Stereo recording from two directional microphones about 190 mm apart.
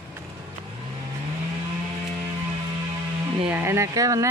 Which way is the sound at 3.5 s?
15° right (ahead or behind).